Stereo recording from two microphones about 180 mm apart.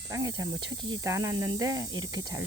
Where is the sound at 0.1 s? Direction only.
20° right (ahead or behind).